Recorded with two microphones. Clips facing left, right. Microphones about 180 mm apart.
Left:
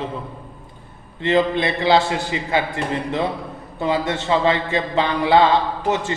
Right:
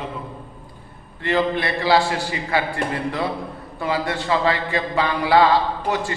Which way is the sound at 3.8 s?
25° left (ahead or behind).